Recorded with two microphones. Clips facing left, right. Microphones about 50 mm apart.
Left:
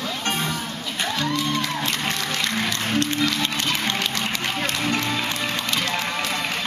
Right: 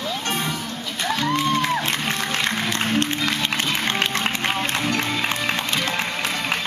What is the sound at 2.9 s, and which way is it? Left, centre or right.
Music, right.